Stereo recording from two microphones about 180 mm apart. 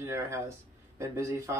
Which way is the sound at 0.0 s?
15° right (ahead or behind).